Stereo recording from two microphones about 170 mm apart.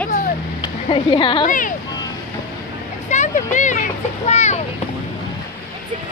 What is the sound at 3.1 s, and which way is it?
A child's voice, 45° left (ahead or behind).